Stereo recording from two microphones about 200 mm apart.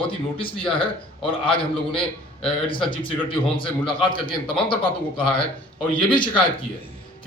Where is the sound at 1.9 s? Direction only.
5° left (ahead or behind).